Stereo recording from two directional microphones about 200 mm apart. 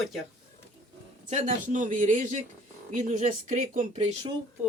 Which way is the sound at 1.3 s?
40° right (ahead or behind).